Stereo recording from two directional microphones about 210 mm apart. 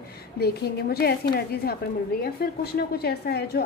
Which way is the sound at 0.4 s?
50° left (ahead or behind).